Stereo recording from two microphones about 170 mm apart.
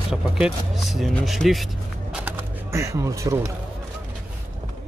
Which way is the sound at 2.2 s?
15° right (ahead or behind).